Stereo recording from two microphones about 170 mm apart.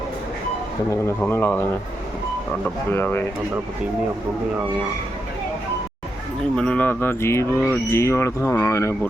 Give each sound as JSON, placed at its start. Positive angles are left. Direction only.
{"t": 1.0, "sound": "speech", "side_deg": 10}
{"t": 6.6, "sound": "speech", "side_deg": 10}